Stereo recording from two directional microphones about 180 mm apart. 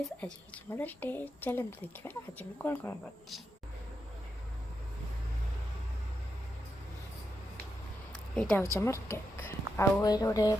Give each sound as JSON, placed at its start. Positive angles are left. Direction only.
{"t": 0.2, "sound": "a woman's voice", "side_deg": 5}
{"t": 8.4, "sound": "a woman's voice", "side_deg": 5}
{"t": 8.6, "sound": "a woman's voice", "side_deg": 15}